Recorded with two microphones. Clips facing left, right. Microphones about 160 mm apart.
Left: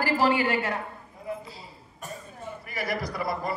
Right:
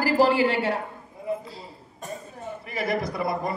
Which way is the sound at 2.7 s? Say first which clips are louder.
Right 4 dB; 25° right (ahead or behind).